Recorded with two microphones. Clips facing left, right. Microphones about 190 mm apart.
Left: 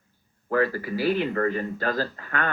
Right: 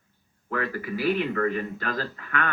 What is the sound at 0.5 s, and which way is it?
Speech, 35° left (ahead or behind).